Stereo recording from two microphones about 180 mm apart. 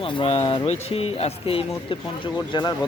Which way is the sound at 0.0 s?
30° left (ahead or behind).